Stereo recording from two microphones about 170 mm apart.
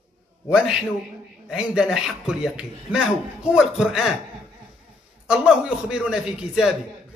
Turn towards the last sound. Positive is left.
turn(degrees=-5)  # may be behind; listen again after turning